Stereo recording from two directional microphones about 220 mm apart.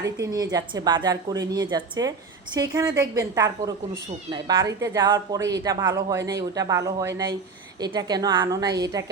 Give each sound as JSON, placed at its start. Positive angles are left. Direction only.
{"t": 0.0, "sound": "speech", "side_deg": -15}